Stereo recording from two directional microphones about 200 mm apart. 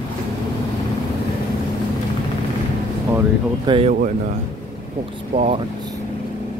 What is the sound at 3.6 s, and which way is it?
Speech, 25° right (ahead or behind).